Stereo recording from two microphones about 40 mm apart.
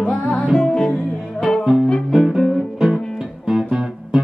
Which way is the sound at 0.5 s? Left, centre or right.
Centre.